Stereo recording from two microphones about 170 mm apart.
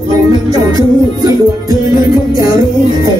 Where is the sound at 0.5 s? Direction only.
20° right (ahead or behind).